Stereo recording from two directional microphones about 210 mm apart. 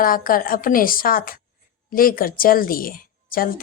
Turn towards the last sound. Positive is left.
turn(degrees=45)  # may be behind; listen again after turning